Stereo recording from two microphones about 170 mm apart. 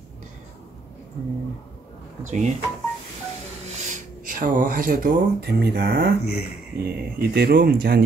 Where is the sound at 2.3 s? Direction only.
45° right (ahead or behind).